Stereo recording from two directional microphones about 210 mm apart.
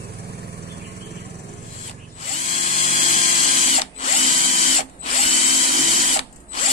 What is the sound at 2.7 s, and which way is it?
Drill, 30° left (ahead or behind).